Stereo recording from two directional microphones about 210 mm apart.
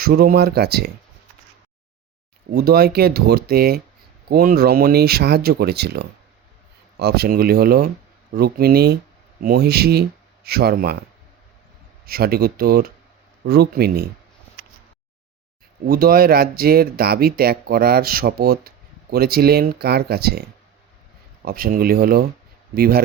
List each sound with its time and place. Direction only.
0.0 s speech: 45° right (ahead or behind)
2.5 s speech: 45° right (ahead or behind)
12.0 s speech: 45° right (ahead or behind)
15.9 s speech: 45° right (ahead or behind)